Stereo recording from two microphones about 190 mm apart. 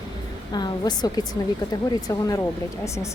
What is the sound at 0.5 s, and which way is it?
A woman's voice, 20° left (ahead or behind).